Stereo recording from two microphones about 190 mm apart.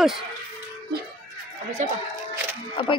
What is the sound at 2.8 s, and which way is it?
Speech, 25° left (ahead or behind).